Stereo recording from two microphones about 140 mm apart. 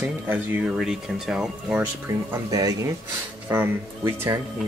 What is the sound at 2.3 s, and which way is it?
Speech, 25° right (ahead or behind).